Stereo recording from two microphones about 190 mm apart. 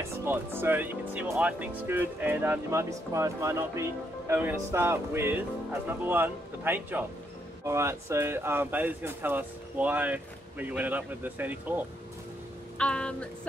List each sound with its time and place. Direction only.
0.2 s speech: 10° right (ahead or behind)
12.7 s music: 5° left (ahead or behind)